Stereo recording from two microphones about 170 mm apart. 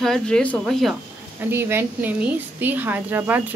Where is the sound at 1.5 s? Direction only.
15° right (ahead or behind).